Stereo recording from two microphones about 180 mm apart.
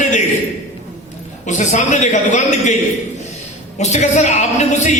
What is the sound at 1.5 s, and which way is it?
A man's voice, 40° left (ahead or behind).